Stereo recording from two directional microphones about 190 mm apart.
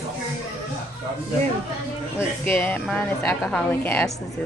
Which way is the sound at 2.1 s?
10° left (ahead or behind).